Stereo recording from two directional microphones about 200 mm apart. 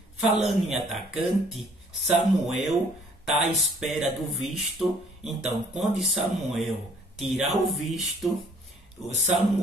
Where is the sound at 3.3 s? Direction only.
Centre (ahead or behind).